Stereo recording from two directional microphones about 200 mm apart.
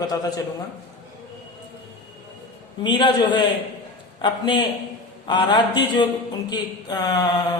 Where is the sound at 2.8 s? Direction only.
25° left (ahead or behind).